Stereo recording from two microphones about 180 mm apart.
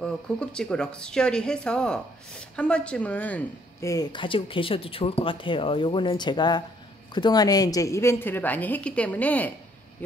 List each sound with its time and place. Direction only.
0.0 s a woman's voice: 5° left (ahead or behind)